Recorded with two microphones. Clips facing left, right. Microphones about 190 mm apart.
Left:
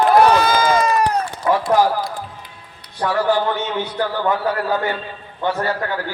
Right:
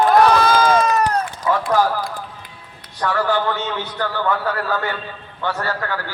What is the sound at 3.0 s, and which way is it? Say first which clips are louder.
A man's voice: left 2 dB; 15° left (ahead or behind).